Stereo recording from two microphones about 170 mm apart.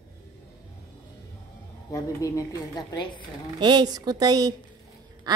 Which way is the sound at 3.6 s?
25° right (ahead or behind).